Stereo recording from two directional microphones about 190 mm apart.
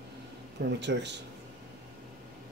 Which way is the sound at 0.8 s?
65° right (ahead or behind).